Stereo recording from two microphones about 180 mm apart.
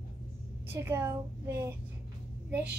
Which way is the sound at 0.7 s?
15° right (ahead or behind).